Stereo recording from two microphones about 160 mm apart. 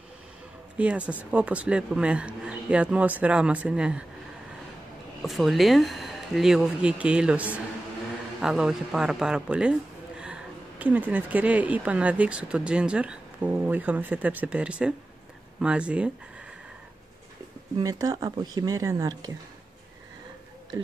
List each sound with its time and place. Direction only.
0.7 s a man's voice: 10° right (ahead or behind)
5.2 s a man's voice: centre (ahead or behind)
17.7 s speech: 20° right (ahead or behind)